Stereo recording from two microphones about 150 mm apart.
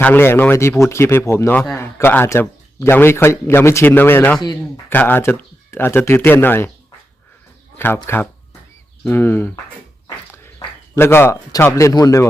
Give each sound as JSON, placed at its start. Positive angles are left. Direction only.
{"t": 0.0, "sound": "a man's voice", "side_deg": 15}
{"t": 7.8, "sound": "a man's voice", "side_deg": 15}
{"t": 10.9, "sound": "speech", "side_deg": 15}